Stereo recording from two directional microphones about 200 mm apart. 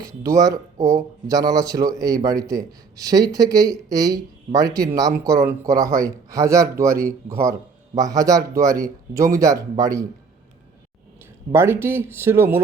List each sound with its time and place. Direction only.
0.0 s speech: 15° right (ahead or behind)
11.5 s speech: 10° right (ahead or behind)